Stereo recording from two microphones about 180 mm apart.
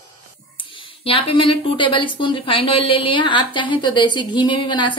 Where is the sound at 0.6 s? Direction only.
30° left (ahead or behind).